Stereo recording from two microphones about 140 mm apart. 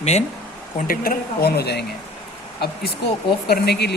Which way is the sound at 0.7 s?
90° left.